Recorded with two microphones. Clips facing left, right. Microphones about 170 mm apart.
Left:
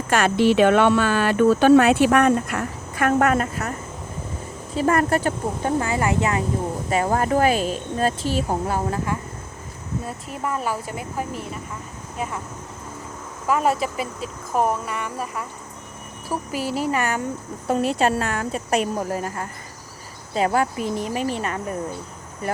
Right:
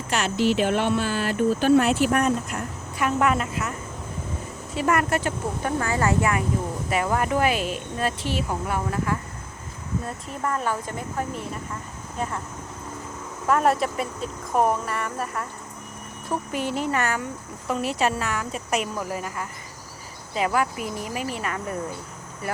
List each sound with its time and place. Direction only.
0.1 s speech: 55° left (ahead or behind); by 2.6 s 80° left
2.9 s a woman's voice: 50° left (ahead or behind); by 5.7 s 35° left (ahead or behind)
5.8 s speech: 20° left (ahead or behind)
6.9 s speech: 35° left (ahead or behind)
10.4 s speech: 10° left (ahead or behind)
13.5 s speech: centre (ahead or behind)
16.9 s speech: 15° left (ahead or behind)
18.0 s speech: 35° left (ahead or behind)